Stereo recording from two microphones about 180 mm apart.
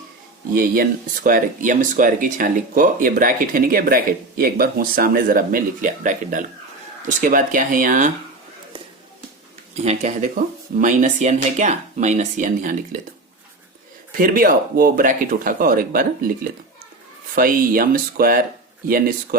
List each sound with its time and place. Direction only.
0.5 s speech: 50° right (ahead or behind)
9.7 s speech: 35° right (ahead or behind)
14.2 s speech: 50° right (ahead or behind)